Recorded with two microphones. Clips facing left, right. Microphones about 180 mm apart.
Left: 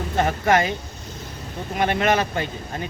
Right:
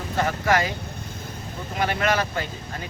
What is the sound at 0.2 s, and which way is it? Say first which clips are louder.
Speech: left 3 dB; 25° left (ahead or behind).